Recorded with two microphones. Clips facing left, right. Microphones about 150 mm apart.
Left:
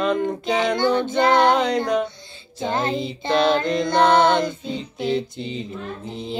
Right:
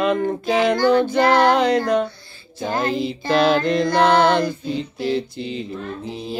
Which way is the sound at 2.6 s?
25° left (ahead or behind).